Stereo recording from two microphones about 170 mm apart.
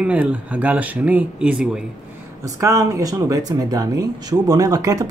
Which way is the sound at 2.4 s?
20° right (ahead or behind).